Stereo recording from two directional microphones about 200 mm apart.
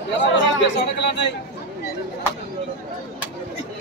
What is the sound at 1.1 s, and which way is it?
Speech, 60° left (ahead or behind).